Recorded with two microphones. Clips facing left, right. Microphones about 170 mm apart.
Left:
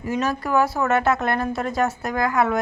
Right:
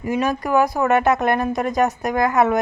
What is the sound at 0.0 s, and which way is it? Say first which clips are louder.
A woman's voice: right 3 dB; 15° right (ahead or behind).